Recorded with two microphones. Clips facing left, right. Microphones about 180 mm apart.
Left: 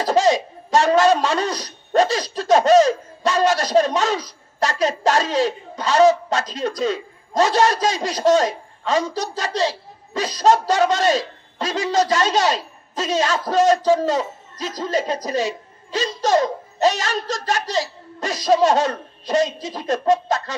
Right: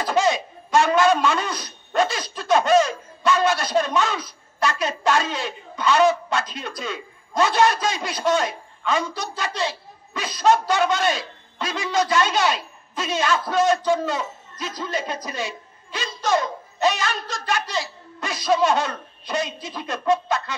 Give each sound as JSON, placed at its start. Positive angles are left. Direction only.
{"t": 0.0, "sound": "speech", "side_deg": 40}